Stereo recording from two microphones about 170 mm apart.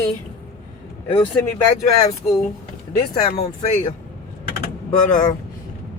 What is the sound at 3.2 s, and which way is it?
Speech, 40° left (ahead or behind).